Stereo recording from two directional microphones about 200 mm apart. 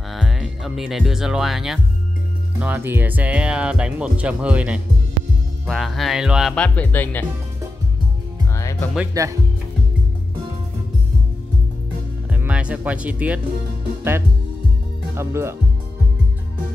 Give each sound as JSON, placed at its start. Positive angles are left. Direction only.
{"t": 0.1, "sound": "speech", "side_deg": 0}
{"t": 8.5, "sound": "music", "side_deg": 15}
{"t": 9.1, "sound": "speech", "side_deg": -15}
{"t": 12.3, "sound": "speech", "side_deg": -5}
{"t": 15.1, "sound": "speech", "side_deg": -15}